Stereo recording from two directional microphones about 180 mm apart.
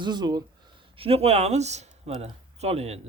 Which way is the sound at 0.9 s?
35° right (ahead or behind).